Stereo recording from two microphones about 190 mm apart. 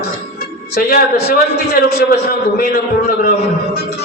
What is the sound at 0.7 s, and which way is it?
Speech, 55° left (ahead or behind).